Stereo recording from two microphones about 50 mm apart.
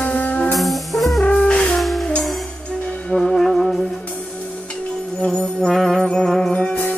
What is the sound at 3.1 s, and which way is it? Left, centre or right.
Music, centre.